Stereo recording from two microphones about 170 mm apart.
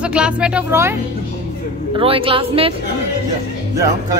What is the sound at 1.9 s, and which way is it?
Speech, 30° right (ahead or behind).